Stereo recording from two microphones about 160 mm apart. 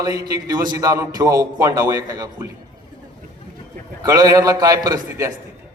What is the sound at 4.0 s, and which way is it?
A man's voice, 20° right (ahead or behind).